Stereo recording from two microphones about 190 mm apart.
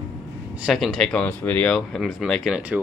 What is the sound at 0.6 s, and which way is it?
Speech, centre (ahead or behind).